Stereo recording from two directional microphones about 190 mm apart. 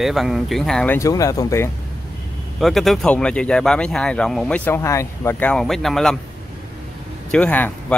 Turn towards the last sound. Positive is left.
turn(degrees=10)  # may be behind; listen again after turning